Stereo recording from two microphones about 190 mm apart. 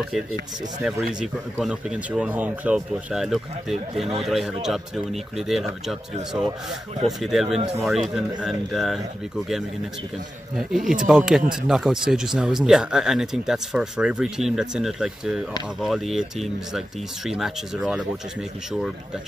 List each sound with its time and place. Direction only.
0.8 s speech: centre (ahead or behind)
7.1 s speech: centre (ahead or behind)
7.4 s speech: 30° right (ahead or behind)
7.8 s speech: centre (ahead or behind)
10.5 s speech: centre (ahead or behind)